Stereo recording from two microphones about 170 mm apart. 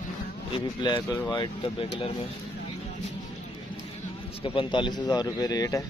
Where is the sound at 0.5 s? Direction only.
25° left (ahead or behind).